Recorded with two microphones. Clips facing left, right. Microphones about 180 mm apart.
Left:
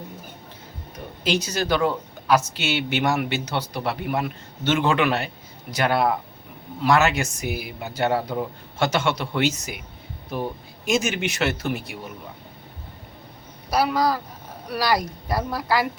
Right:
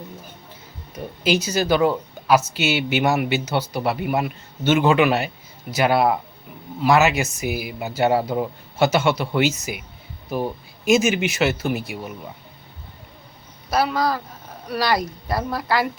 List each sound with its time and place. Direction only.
0.9 s speech: 5° right (ahead or behind)
13.7 s speech: 10° left (ahead or behind)